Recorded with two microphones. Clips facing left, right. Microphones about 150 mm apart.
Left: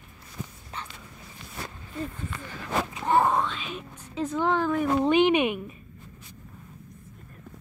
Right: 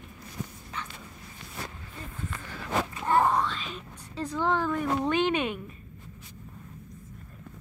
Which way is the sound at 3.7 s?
15° left (ahead or behind).